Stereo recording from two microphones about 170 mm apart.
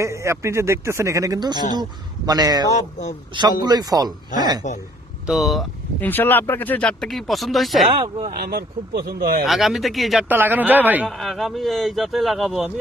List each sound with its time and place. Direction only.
0.0 s speech: 15° right (ahead or behind)
2.7 s speech: 45° left (ahead or behind)
3.3 s speech: 25° right (ahead or behind)
4.6 s speech: 45° left (ahead or behind)
5.2 s speech: centre (ahead or behind)
6.0 s speech: 10° left (ahead or behind)
7.9 s speech: 30° right (ahead or behind)
8.3 s speech: 65° right (ahead or behind)
9.5 s speech: centre (ahead or behind)
10.2 s speech: 10° right (ahead or behind)
11.1 s speech: centre (ahead or behind)